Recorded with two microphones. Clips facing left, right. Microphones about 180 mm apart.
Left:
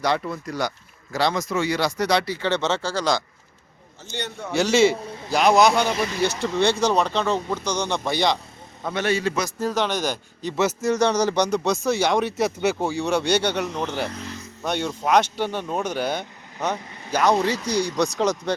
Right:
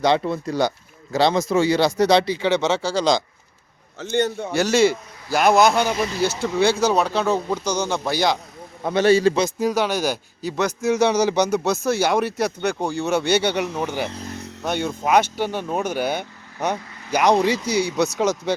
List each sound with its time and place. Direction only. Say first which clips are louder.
0.0 s speech: right 5 dB; 25° right (ahead or behind)
4.5 s a man's voice: even; centre (ahead or behind)
8.8 s a man's voice: right 7 dB; 30° right (ahead or behind)
9.6 s speech: right 3 dB; 10° right (ahead or behind)
10.6 s a man's voice: right 1 dB; 5° left (ahead or behind)